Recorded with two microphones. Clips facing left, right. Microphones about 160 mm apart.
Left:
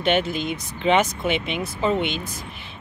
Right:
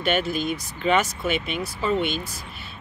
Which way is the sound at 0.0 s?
20° left (ahead or behind).